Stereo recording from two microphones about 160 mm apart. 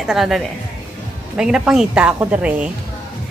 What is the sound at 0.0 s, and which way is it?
A woman's voice, centre (ahead or behind).